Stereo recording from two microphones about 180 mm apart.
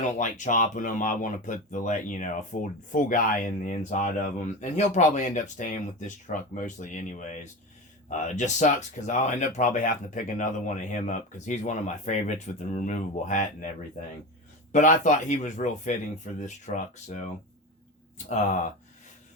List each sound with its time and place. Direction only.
0.0 s speech: 45° left (ahead or behind)
14.7 s speech: 45° left (ahead or behind)
18.3 s speech: 40° left (ahead or behind)